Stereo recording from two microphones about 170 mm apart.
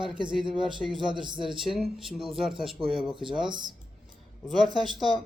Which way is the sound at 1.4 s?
Centre (ahead or behind).